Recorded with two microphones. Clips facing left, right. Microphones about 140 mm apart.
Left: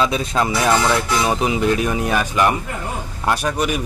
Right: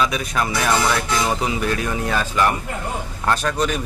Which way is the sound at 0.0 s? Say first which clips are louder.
Left 3 dB; 25° left (ahead or behind).